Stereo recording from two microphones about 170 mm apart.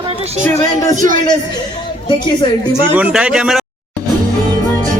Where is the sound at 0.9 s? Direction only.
50° right (ahead or behind).